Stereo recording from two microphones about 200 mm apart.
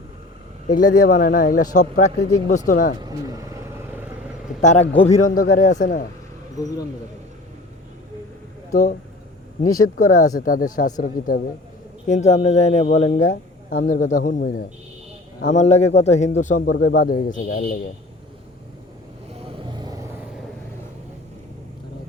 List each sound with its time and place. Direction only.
0.7 s a man's voice: 40° left (ahead or behind)
3.0 s vehicle: 20° right (ahead or behind)
4.6 s speech: 35° left (ahead or behind)
8.7 s a man's voice: 45° left (ahead or behind)
15.4 s speech: 35° left (ahead or behind)
16.6 s a man's voice: 50° left (ahead or behind)
19.4 s vehicle: 25° right (ahead or behind)